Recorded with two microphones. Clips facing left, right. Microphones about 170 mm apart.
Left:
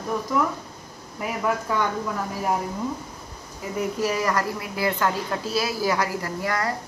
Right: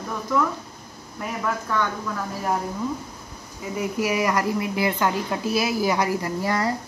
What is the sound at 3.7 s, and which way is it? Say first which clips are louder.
A woman's voice: right 1 dB; 10° right (ahead or behind).